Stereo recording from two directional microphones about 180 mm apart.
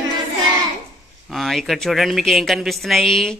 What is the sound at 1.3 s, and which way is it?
A man's voice, centre (ahead or behind).